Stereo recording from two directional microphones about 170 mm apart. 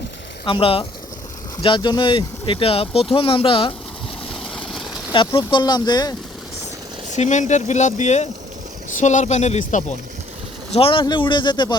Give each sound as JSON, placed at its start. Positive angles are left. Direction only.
{"t": 0.4, "sound": "speech", "side_deg": 30}
{"t": 4.3, "sound": "vehicle", "side_deg": 0}
{"t": 5.1, "sound": "speech", "side_deg": 30}
{"t": 7.1, "sound": "speech", "side_deg": 45}
{"t": 10.8, "sound": "speech", "side_deg": 30}